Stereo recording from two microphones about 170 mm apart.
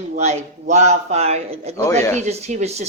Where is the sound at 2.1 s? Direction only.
45° right (ahead or behind).